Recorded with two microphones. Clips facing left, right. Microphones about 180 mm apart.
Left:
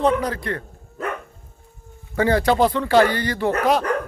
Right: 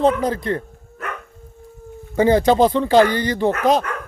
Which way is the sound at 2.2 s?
20° right (ahead or behind).